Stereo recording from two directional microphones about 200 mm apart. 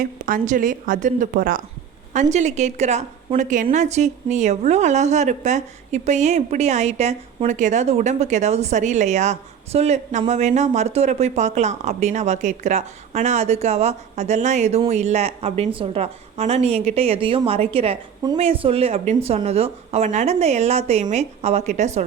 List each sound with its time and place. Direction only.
0.0 s a woman's voice: 40° right (ahead or behind)